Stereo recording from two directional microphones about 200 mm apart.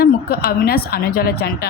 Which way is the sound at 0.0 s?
50° left (ahead or behind).